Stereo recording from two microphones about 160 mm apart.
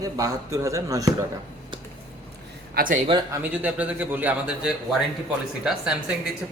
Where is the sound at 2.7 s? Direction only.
60° right (ahead or behind).